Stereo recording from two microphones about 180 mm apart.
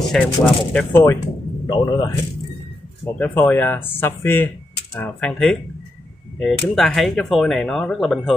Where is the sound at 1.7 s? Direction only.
25° left (ahead or behind).